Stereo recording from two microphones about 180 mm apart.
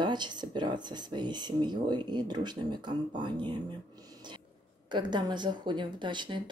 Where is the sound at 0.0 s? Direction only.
25° right (ahead or behind).